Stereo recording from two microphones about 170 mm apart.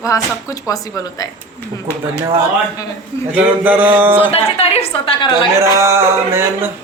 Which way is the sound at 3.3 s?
10° right (ahead or behind).